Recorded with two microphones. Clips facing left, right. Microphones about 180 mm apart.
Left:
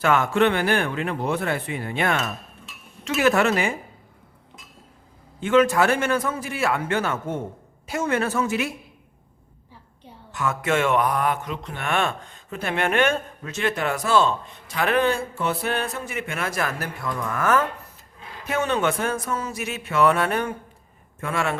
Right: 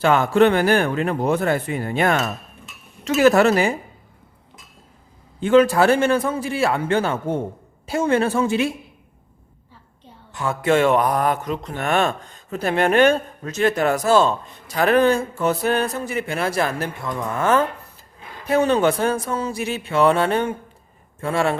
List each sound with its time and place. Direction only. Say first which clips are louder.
0.0 s mantra: right 4 dB; 35° right (ahead or behind)
5.4 s mantra: right 4 dB; 35° right (ahead or behind)
7.9 s a woman's voice: right 5 dB; 30° right (ahead or behind)
10.3 s mantra: right 4 dB; 30° right (ahead or behind)
17.3 s a woman's voice: right 3 dB; 25° right (ahead or behind)
18.4 s mantra: right 6 dB; 35° right (ahead or behind)